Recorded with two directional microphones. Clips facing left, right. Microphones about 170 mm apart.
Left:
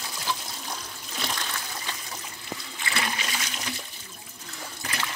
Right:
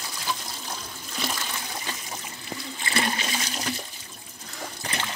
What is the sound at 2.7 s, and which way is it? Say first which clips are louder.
Toilet flush: right 4 dB; 30° right (ahead or behind).